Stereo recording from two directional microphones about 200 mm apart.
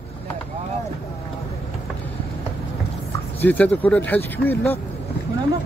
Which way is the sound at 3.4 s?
10° left (ahead or behind).